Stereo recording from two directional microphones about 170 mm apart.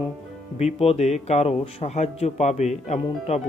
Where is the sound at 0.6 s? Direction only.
35° left (ahead or behind).